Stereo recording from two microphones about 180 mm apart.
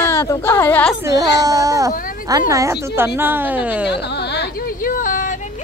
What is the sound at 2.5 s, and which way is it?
A woman's voice, 20° right (ahead or behind).